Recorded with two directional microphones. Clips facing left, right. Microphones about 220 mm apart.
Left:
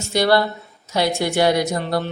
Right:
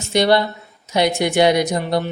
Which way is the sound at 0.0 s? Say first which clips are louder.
Right 1 dB; 20° right (ahead or behind).